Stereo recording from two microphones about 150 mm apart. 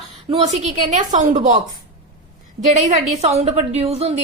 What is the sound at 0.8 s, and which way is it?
Speech, 60° right (ahead or behind).